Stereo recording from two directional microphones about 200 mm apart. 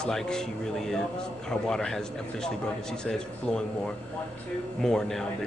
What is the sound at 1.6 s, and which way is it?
Speech, 5° left (ahead or behind).